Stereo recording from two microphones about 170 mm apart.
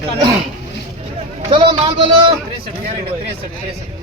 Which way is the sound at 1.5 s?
30° right (ahead or behind).